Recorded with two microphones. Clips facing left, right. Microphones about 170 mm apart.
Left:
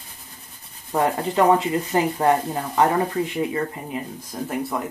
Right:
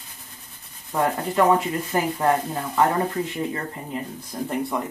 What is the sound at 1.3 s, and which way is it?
Speech, 20° left (ahead or behind).